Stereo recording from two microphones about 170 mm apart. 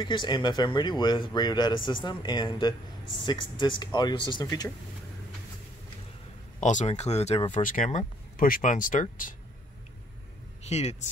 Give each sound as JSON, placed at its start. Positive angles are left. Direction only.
{"t": 0.0, "sound": "speech", "side_deg": 30}
{"t": 6.6, "sound": "speech", "side_deg": 45}
{"t": 7.5, "sound": "speech", "side_deg": 50}
{"t": 10.7, "sound": "speech", "side_deg": 40}